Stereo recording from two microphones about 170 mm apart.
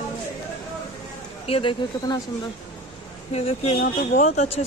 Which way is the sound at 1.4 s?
35° left (ahead or behind).